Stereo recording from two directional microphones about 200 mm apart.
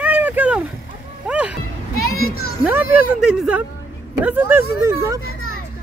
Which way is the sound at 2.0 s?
90° left.